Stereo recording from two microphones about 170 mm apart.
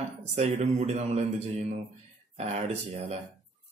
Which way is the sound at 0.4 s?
40° right (ahead or behind).